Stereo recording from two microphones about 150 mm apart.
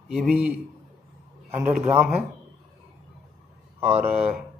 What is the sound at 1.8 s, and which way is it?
Speech, 15° right (ahead or behind).